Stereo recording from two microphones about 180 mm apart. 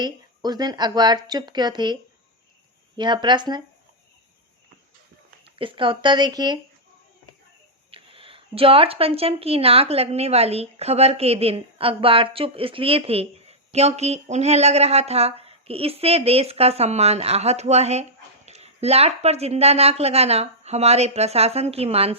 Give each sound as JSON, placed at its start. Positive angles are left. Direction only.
{"t": 0.0, "sound": "speech", "side_deg": -25}
{"t": 3.0, "sound": "speech", "side_deg": -25}
{"t": 5.5, "sound": "speech", "side_deg": -30}
{"t": 7.9, "sound": "speech", "side_deg": -30}